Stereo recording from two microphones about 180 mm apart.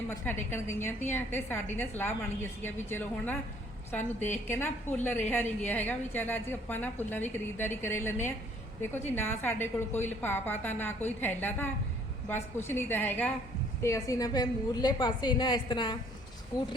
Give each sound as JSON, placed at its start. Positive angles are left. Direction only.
{"t": 0.1, "sound": "a woman's voice", "side_deg": 15}